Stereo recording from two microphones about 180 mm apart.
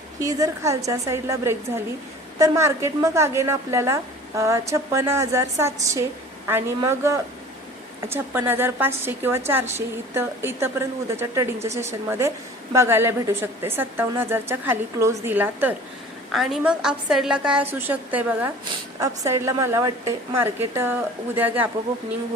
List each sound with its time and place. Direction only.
0.2 s a woman's voice: 20° right (ahead or behind)